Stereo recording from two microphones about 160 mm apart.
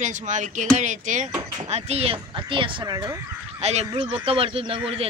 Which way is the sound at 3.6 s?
40° right (ahead or behind).